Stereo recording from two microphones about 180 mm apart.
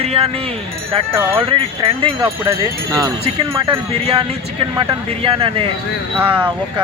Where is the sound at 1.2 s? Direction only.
10° right (ahead or behind).